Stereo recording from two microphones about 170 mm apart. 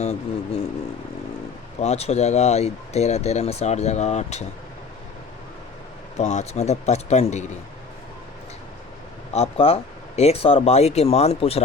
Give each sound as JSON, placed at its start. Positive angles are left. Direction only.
{"t": 0.0, "sound": "speech", "side_deg": 40}
{"t": 1.8, "sound": "speech", "side_deg": 40}
{"t": 6.1, "sound": "speech", "side_deg": 40}
{"t": 9.3, "sound": "speech", "side_deg": 35}